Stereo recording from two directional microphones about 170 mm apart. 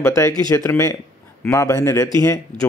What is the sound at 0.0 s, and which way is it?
A man's voice, 15° left (ahead or behind).